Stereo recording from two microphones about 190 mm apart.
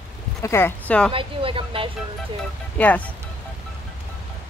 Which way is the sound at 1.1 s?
30° right (ahead or behind).